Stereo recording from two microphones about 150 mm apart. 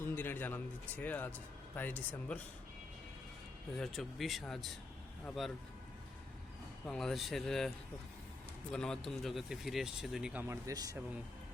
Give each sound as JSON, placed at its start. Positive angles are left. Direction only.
{"t": 0.0, "sound": "speech", "side_deg": 15}
{"t": 3.8, "sound": "speech", "side_deg": 0}
{"t": 6.8, "sound": "speech", "side_deg": 0}
{"t": 8.7, "sound": "speech", "side_deg": 5}
{"t": 10.4, "sound": "speech", "side_deg": -20}